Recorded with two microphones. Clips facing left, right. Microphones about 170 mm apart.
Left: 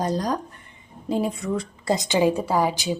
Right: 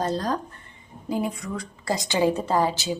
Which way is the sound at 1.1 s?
25° left (ahead or behind).